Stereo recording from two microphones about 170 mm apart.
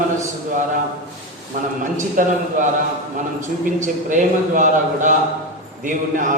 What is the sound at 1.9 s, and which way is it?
A man's voice, 50° right (ahead or behind).